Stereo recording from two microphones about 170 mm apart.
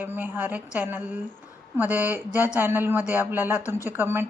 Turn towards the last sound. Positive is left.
turn(degrees=-15)  # may be behind; listen again after turning